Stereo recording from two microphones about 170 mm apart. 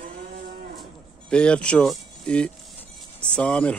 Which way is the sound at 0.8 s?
5° left (ahead or behind).